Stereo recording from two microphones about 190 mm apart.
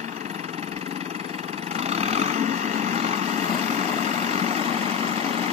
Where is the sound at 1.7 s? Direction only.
35° right (ahead or behind).